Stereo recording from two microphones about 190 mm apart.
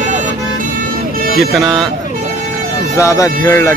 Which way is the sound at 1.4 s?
Centre (ahead or behind).